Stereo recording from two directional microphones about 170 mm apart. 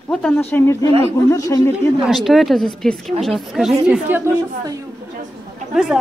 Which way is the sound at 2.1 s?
Centre (ahead or behind).